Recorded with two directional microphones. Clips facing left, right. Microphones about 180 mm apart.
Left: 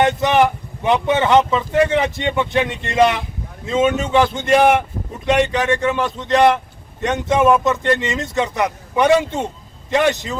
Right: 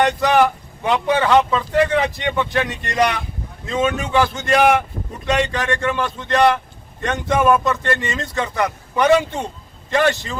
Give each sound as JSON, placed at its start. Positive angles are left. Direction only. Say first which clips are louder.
{"t": 0.0, "sound": "speech", "louder": "left 1 dB", "side_deg": 20}